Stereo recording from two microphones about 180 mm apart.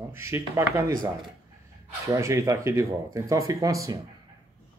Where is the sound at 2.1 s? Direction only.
15° right (ahead or behind).